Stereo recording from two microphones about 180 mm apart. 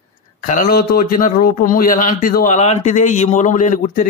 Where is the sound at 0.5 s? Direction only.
50° left (ahead or behind).